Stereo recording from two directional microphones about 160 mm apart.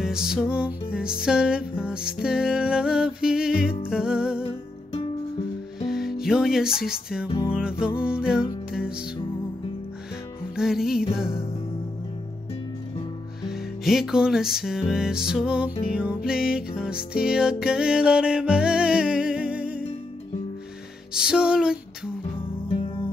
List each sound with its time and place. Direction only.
0.0 s music: 5° right (ahead or behind)
4.4 s music: 35° left (ahead or behind)
5.9 s music: centre (ahead or behind)
10.5 s music: 5° right (ahead or behind)
13.4 s music: centre (ahead or behind)
21.1 s music: 5° right (ahead or behind)